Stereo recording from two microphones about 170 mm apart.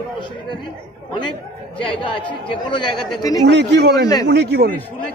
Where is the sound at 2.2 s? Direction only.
30° left (ahead or behind).